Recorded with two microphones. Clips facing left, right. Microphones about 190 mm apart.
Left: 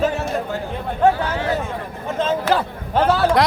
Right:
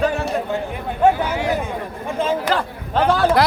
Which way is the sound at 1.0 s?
10° right (ahead or behind).